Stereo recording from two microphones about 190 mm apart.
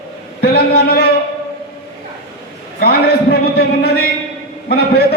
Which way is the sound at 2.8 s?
55° left (ahead or behind).